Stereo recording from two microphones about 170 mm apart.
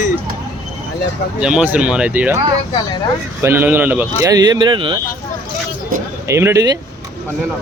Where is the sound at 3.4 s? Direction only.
15° right (ahead or behind).